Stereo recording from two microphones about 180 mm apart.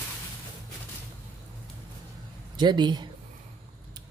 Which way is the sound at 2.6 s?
25° right (ahead or behind).